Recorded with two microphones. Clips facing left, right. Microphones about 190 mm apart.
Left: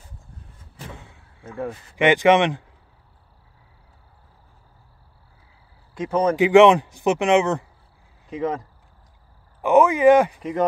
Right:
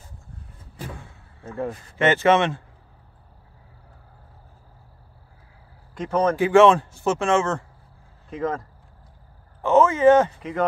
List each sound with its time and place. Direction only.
0.9 s door: 15° left (ahead or behind)
2.0 s speech: 15° left (ahead or behind)
5.9 s speech: 10° left (ahead or behind)